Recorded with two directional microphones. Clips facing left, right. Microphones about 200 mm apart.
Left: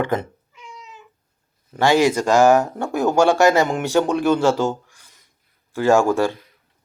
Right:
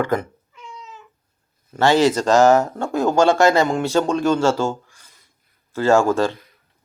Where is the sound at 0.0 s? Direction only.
20° left (ahead or behind).